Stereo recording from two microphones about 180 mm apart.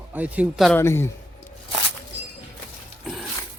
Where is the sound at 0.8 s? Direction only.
15° left (ahead or behind).